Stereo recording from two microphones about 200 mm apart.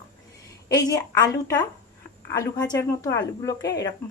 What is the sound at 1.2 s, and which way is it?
A woman's voice, 15° left (ahead or behind).